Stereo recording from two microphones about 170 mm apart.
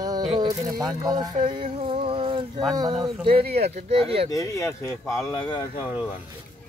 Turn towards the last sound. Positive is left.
turn(degrees=30)  # may be behind; listen again after turning